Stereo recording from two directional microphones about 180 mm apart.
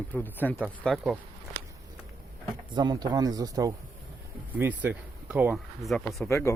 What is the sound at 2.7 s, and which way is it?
Speech, 25° right (ahead or behind).